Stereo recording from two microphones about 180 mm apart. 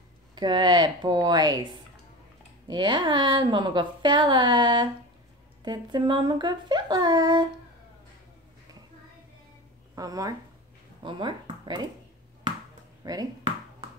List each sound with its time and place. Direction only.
0.4 s a woman's voice: 25° right (ahead or behind)
9.9 s a woman's voice: 20° right (ahead or behind)
12.5 s a sound: 25° right (ahead or behind)
13.0 s speech: 20° right (ahead or behind)